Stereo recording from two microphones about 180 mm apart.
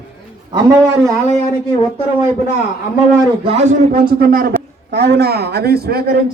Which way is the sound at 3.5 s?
35° right (ahead or behind).